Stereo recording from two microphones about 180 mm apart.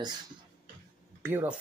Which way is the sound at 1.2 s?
10° right (ahead or behind).